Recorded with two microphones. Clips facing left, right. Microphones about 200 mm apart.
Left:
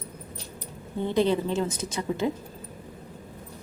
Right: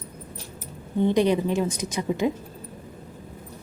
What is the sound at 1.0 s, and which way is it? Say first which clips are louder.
A woman's voice: right 3 dB; 15° right (ahead or behind).